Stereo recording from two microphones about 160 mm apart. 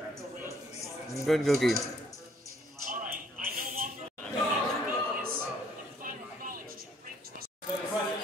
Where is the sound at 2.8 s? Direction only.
60° right (ahead or behind).